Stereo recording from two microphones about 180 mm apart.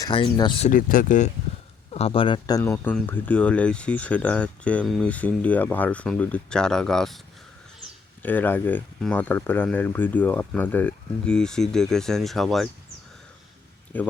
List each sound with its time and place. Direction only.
0.0 s speech: 25° left (ahead or behind)
0.6 s speech: 50° left (ahead or behind)
1.9 s speech: 35° left (ahead or behind)
2.6 s speech: 15° left (ahead or behind)
8.2 s speech: 10° left (ahead or behind)
13.9 s speech: 10° left (ahead or behind)